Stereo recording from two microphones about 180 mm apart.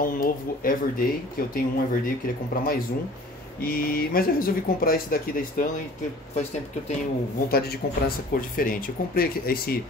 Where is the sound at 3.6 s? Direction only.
55° left (ahead or behind).